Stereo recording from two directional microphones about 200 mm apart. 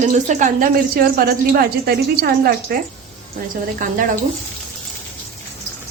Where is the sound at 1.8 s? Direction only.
50° right (ahead or behind).